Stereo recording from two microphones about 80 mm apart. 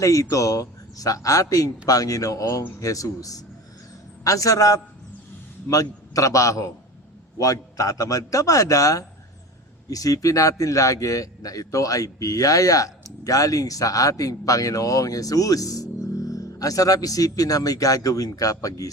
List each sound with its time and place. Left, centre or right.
0.0 s a man's voice: left